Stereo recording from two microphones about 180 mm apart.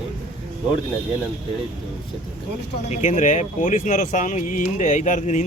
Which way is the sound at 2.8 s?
40° left (ahead or behind).